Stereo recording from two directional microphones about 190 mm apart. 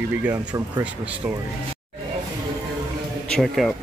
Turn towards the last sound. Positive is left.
turn(degrees=0)  # may be behind; listen again after turning